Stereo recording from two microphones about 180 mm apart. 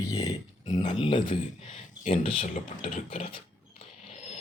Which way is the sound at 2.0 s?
40° left (ahead or behind).